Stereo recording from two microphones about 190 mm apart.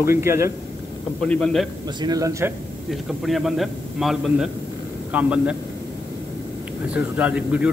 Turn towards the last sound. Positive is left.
turn(degrees=-5)  # may be behind; listen again after turning